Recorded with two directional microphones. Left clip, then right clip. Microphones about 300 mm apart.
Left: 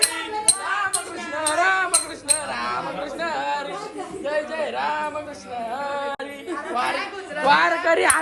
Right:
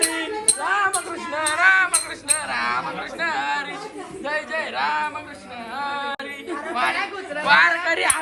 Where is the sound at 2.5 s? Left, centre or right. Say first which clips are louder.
Right 3 dB; centre.